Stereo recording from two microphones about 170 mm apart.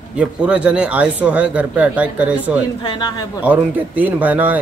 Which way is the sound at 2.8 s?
25° left (ahead or behind).